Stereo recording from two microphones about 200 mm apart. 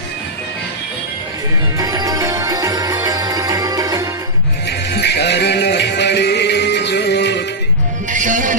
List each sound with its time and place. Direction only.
1.8 s music: 20° right (ahead or behind)
4.9 s music: 55° left (ahead or behind)
8.1 s music: 40° right (ahead or behind)